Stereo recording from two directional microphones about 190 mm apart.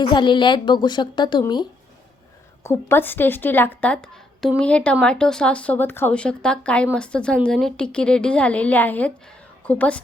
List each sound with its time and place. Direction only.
0.0 s a woman's voice: 25° left (ahead or behind)
2.6 s a woman's voice: 10° left (ahead or behind)